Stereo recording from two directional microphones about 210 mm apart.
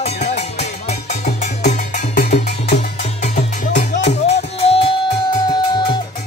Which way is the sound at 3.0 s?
35° left (ahead or behind).